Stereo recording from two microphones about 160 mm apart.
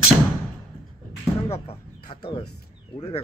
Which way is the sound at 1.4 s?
40° left (ahead or behind).